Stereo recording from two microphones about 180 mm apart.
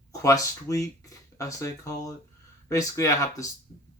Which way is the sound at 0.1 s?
20° left (ahead or behind).